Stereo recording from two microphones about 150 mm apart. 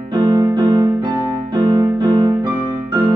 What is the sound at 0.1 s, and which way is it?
Music, 30° right (ahead or behind).